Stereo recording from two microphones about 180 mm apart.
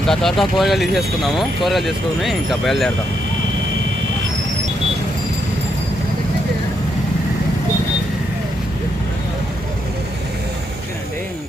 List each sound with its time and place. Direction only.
0.1 s speech: centre (ahead or behind)